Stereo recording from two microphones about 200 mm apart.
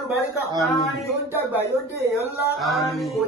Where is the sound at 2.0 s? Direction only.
15° right (ahead or behind).